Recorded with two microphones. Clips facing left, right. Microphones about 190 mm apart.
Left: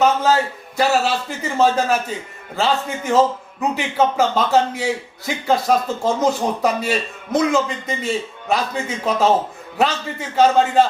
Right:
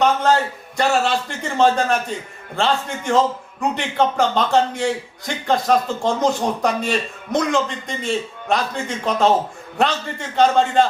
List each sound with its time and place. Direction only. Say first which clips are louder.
0.0 s a man's voice: left 1 dB; 5° left (ahead or behind)